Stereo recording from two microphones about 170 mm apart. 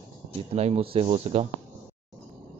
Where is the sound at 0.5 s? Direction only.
40° right (ahead or behind).